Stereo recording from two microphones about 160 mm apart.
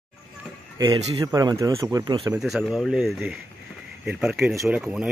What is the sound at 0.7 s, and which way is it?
Speech, 25° right (ahead or behind).